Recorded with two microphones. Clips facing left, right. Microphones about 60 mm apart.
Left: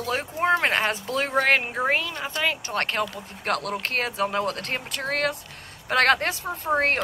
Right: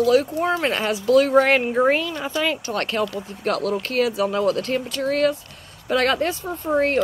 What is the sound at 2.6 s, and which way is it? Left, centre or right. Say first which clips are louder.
Speech: right 3 dB; left.